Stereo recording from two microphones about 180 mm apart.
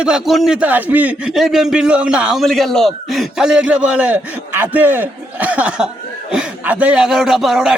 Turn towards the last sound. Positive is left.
turn(degrees=-5)  # may be behind; listen again after turning